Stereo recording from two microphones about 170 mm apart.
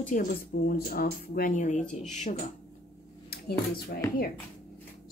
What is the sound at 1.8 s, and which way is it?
Speech, 5° left (ahead or behind).